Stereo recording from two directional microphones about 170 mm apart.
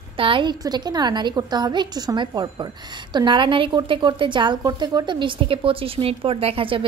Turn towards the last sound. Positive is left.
turn(degrees=-30)  # may be behind; listen again after turning